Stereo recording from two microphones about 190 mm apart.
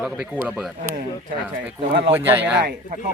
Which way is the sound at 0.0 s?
5° right (ahead or behind).